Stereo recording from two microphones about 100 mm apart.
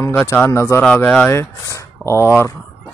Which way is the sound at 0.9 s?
10° left (ahead or behind).